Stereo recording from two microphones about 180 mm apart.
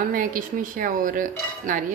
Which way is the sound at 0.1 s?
50° right (ahead or behind).